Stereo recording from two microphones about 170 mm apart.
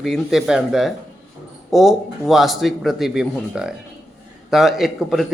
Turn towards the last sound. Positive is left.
turn(degrees=0)  # may be behind; listen again after turning